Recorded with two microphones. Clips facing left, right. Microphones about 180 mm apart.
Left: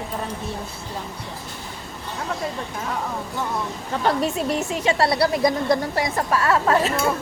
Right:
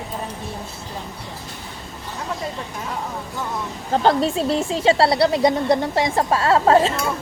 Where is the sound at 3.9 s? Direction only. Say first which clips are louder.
Right 4 dB; 30° right (ahead or behind).